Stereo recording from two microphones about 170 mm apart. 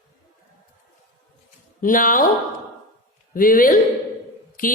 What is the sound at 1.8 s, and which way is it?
Speech, 55° left (ahead or behind).